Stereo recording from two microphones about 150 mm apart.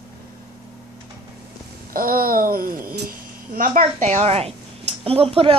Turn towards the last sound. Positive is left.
turn(degrees=-40)  # may be behind; listen again after turning